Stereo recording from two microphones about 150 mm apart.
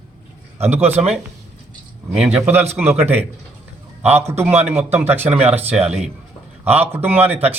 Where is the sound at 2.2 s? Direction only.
10° right (ahead or behind).